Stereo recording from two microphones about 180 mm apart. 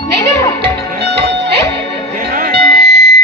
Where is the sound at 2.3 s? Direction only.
45° right (ahead or behind).